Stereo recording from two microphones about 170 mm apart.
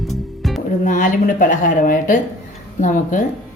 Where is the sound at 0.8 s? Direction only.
50° left (ahead or behind).